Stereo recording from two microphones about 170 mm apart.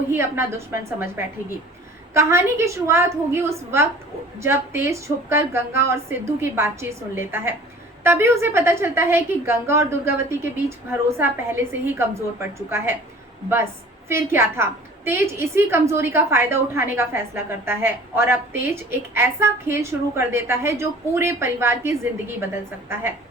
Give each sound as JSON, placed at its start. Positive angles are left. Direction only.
{"t": 0.1, "sound": "a woman's voice", "side_deg": -15}
{"t": 14.1, "sound": "a woman's voice", "side_deg": -15}